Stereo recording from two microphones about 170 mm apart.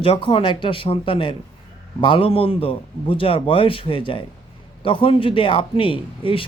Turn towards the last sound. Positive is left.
turn(degrees=30)  # may be behind; listen again after turning